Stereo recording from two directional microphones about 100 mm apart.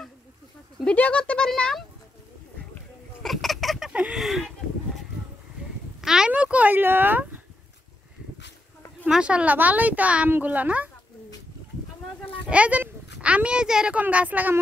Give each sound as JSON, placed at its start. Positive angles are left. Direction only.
{"t": 0.7, "sound": "speech", "side_deg": 15}
{"t": 3.2, "sound": "fowl", "side_deg": 0}
{"t": 3.9, "sound": "speech", "side_deg": -5}
{"t": 5.9, "sound": "speech", "side_deg": -5}
{"t": 9.0, "sound": "speech", "side_deg": -10}
{"t": 12.4, "sound": "a child's voice", "side_deg": -15}